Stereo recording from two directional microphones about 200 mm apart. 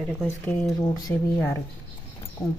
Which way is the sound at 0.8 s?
20° left (ahead or behind).